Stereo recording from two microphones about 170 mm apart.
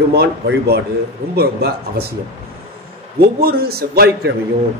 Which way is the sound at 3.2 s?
65° right (ahead or behind).